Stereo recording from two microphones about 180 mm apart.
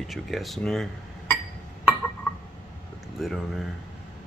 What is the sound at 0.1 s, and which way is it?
Speech, centre (ahead or behind).